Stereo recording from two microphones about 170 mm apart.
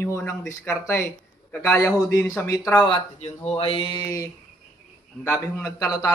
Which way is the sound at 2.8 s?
30° left (ahead or behind).